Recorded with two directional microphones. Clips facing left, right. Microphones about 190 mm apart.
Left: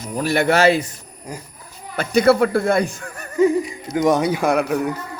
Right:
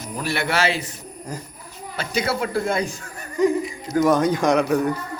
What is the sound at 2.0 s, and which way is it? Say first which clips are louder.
Speech: left 9 dB; 55° left (ahead or behind).